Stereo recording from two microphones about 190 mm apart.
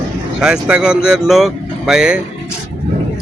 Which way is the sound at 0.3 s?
5° right (ahead or behind).